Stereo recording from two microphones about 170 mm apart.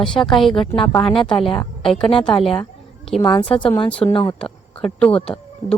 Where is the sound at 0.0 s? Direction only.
Centre (ahead or behind).